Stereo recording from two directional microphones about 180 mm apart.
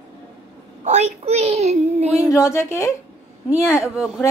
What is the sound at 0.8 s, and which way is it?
Speech, 35° right (ahead or behind).